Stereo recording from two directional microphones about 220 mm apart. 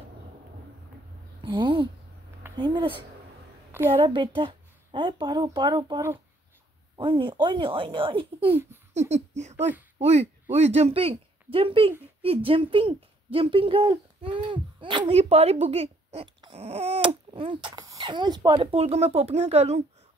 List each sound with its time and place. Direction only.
1.4 s speech: 20° right (ahead or behind)